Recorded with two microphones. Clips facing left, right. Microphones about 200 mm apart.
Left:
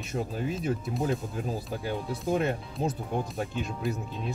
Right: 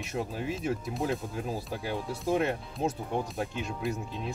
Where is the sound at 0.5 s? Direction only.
Centre (ahead or behind).